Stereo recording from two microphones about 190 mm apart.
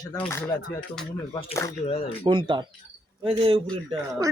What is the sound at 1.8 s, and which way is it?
Speech, 30° left (ahead or behind).